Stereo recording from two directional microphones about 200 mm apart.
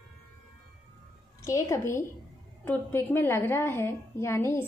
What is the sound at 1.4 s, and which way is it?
A woman's voice, 15° left (ahead or behind).